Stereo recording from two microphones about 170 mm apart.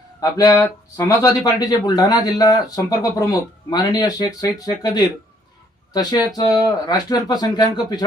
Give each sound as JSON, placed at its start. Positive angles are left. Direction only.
{"t": 0.2, "sound": "speech", "side_deg": 20}